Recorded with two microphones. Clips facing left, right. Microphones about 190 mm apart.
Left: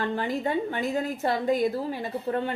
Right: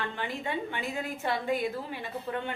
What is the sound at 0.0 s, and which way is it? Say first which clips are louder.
A woman's voice: left 7 dB; 40° left (ahead or behind).